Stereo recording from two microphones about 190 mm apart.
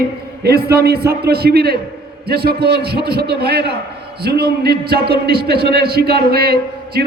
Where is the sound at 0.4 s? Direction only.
55° right (ahead or behind).